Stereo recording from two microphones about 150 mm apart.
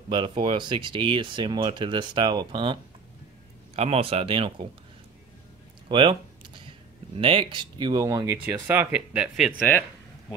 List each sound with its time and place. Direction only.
0.1 s speech: 35° right (ahead or behind)
5.9 s a sound: 35° right (ahead or behind)
7.2 s speech: 35° right (ahead or behind)
8.6 s speech: 10° right (ahead or behind)
9.5 s speech: 10° left (ahead or behind)